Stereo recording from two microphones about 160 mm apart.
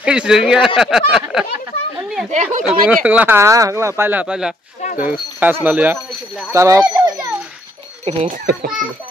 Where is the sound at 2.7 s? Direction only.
5° right (ahead or behind).